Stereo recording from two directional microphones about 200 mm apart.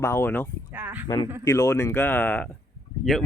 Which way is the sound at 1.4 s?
15° left (ahead or behind).